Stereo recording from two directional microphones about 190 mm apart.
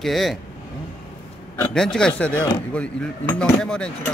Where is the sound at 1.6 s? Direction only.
5° left (ahead or behind).